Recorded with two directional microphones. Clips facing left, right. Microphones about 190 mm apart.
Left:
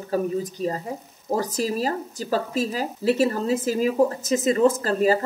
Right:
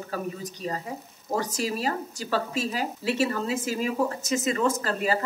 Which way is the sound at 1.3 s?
35° left (ahead or behind).